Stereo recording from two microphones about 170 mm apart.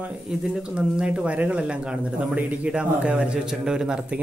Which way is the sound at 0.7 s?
5° right (ahead or behind).